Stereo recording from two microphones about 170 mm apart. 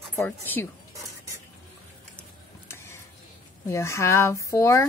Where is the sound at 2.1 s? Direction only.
15° left (ahead or behind).